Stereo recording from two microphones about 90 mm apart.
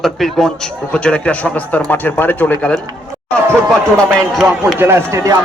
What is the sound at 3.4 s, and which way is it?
Speech, 30° right (ahead or behind).